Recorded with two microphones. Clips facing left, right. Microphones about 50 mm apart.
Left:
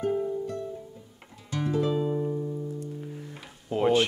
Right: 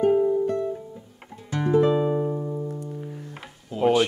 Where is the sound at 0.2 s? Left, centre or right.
Right.